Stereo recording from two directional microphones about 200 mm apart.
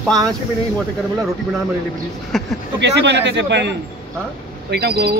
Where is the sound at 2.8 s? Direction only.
60° right (ahead or behind).